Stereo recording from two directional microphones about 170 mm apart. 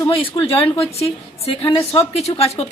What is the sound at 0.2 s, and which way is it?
A woman's voice, 35° left (ahead or behind).